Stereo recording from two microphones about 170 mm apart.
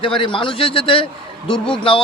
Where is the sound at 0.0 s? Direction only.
30° left (ahead or behind).